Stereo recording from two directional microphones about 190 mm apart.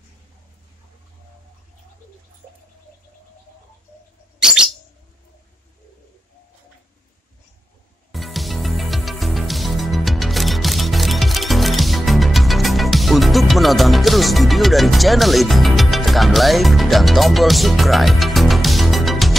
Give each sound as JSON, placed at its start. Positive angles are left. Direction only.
{"t": 8.1, "sound": "music", "side_deg": 0}